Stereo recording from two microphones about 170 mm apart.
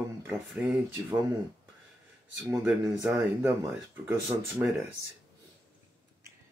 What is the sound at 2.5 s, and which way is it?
Speech, 15° right (ahead or behind).